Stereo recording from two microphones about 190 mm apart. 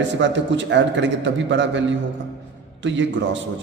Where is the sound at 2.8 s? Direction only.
75° right (ahead or behind).